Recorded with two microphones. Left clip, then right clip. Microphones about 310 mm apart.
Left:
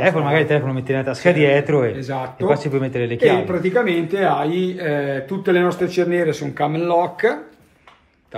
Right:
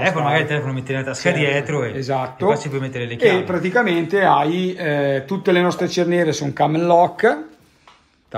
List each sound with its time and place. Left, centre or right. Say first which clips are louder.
0.0 s a man's voice: left 1 dB; centre
2.0 s speech: right 4 dB; right
2.5 s a man's voice: left 3 dB; centre
3.2 s speech: even; right